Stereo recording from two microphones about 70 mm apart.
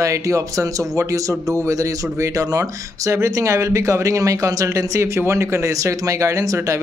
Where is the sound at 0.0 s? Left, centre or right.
Right.